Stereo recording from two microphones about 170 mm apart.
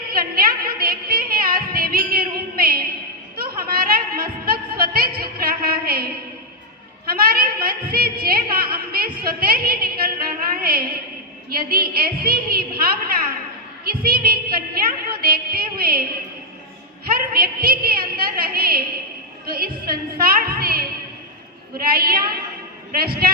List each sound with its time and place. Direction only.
0.7 s music: 60° right (ahead or behind)
7.1 s a woman's voice: 60° right (ahead or behind)
17.1 s a woman's voice: 60° right (ahead or behind)